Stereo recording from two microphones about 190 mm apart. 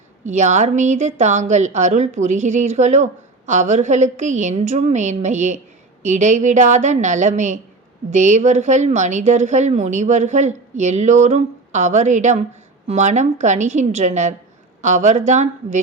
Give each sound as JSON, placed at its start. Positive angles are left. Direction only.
{"t": 0.3, "sound": "a woman's voice", "side_deg": -40}